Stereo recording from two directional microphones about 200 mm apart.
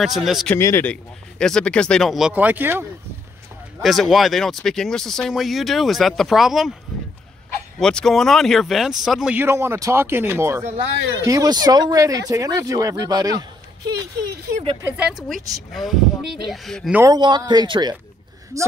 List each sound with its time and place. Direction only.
0.0 s speech: centre (ahead or behind)
0.6 s speech: 15° left (ahead or behind); by 2.9 s 10° right (ahead or behind)
3.8 s speech: centre (ahead or behind)
7.8 s speech: centre (ahead or behind); by 13.5 s 20° right (ahead or behind)
14.8 s speech: 5° right (ahead or behind)
17.0 s speech: 20° right (ahead or behind)